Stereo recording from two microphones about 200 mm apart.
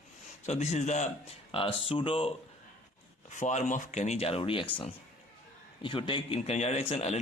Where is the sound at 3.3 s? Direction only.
35° left (ahead or behind).